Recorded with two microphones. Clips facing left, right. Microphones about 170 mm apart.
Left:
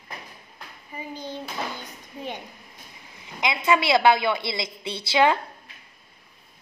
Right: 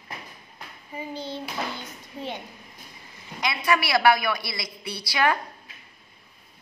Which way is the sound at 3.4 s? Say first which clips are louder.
Left 2 dB; 20° left (ahead or behind).